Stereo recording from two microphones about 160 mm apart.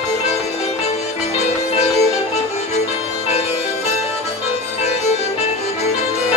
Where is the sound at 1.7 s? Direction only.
40° left (ahead or behind).